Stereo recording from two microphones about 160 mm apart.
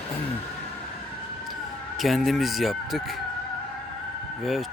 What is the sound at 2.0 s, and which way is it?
Speech, centre (ahead or behind).